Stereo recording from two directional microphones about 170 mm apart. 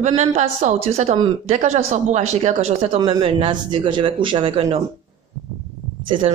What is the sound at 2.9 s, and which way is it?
Speech, 25° right (ahead or behind).